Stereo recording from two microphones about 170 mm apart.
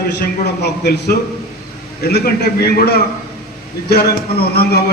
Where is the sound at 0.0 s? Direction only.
65° left (ahead or behind).